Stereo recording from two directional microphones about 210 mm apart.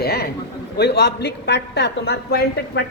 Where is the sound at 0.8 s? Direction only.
55° left (ahead or behind).